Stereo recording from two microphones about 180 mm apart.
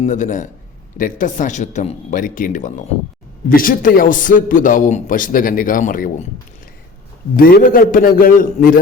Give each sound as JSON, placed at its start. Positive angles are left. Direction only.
{"t": 0.0, "sound": "a man's voice", "side_deg": 45}
{"t": 7.3, "sound": "a man's voice", "side_deg": 55}